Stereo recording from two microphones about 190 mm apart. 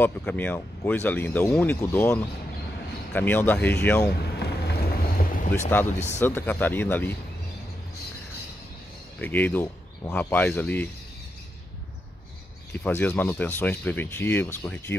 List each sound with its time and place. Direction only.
0.0 s speech: 10° left (ahead or behind)
4.6 s vehicle: 50° left (ahead or behind)
5.7 s speech: 10° left (ahead or behind)
9.2 s speech: 10° left (ahead or behind)
12.7 s speech: 10° left (ahead or behind)